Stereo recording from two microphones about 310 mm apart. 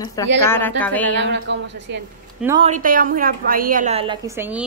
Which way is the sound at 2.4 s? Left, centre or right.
Centre.